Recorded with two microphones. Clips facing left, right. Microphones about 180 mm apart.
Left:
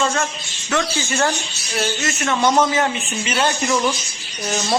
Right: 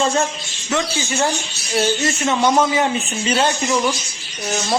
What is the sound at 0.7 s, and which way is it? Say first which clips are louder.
Speech: even; 20° right (ahead or behind).